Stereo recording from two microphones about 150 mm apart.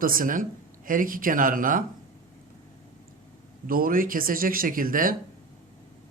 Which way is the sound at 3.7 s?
70° right (ahead or behind).